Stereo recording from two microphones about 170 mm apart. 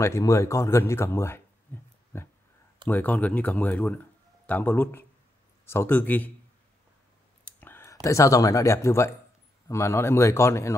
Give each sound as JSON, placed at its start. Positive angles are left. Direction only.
{"t": 0.0, "sound": "speech", "side_deg": 15}
{"t": 2.1, "sound": "a sound", "side_deg": 15}
{"t": 2.9, "sound": "speech", "side_deg": 10}
{"t": 7.4, "sound": "speech", "side_deg": 10}